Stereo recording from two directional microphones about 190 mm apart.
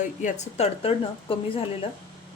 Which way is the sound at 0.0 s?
40° left (ahead or behind).